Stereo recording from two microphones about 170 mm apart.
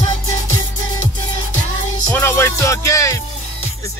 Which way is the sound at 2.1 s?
15° left (ahead or behind).